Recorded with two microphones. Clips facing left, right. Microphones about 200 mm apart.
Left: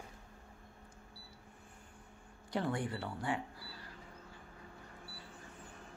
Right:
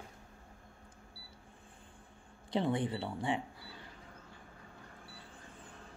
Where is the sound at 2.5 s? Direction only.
20° right (ahead or behind).